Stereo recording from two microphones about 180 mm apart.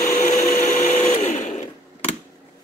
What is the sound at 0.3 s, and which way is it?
Blender, 40° left (ahead or behind).